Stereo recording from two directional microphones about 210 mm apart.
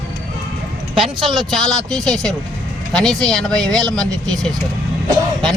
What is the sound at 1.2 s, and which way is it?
Speech, 20° right (ahead or behind).